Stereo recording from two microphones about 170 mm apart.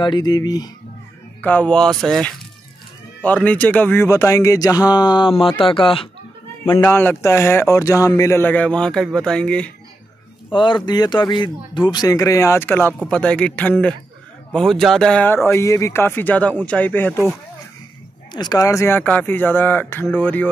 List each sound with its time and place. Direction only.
0.0 s speech: 25° left (ahead or behind)
1.4 s speech: 10° left (ahead or behind); by 6.0 s 30° left (ahead or behind)
6.8 s speech: 10° left (ahead or behind)
10.5 s speech: 30° left (ahead or behind); by 17.2 s 10° left (ahead or behind)
18.3 s speech: 25° left (ahead or behind)